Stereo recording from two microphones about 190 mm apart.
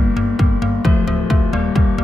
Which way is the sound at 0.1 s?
Centre (ahead or behind).